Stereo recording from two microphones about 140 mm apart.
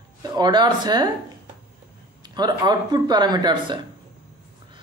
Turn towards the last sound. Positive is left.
turn(degrees=-30)  # may be behind; listen again after turning